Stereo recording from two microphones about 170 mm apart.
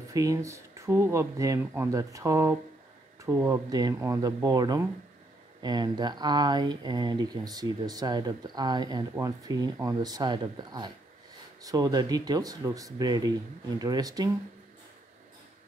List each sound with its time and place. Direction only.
0.1 s speech: 20° right (ahead or behind)